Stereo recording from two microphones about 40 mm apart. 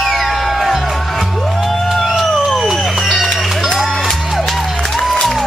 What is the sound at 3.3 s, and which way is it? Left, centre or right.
Music, centre.